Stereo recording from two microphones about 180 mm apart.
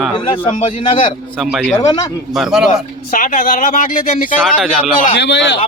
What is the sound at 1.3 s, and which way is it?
Speech, centre (ahead or behind).